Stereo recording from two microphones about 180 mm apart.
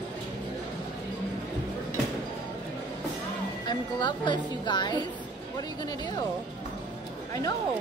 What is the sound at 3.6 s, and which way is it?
A woman's voice, 25° left (ahead or behind).